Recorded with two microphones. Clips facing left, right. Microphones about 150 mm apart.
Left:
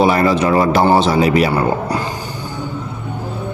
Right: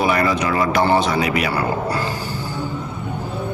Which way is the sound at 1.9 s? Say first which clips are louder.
Left 2 dB; 20° left (ahead or behind).